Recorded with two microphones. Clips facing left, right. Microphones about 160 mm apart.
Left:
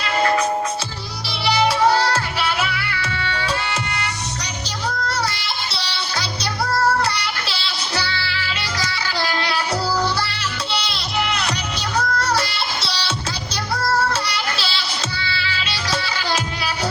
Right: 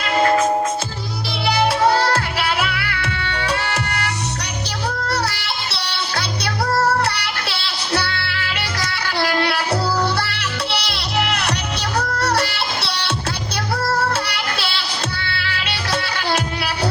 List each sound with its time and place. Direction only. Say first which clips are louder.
1.5 s music: even; 55° right (ahead or behind)